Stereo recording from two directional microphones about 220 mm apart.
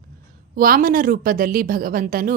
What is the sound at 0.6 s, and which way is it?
A woman's voice, 40° right (ahead or behind).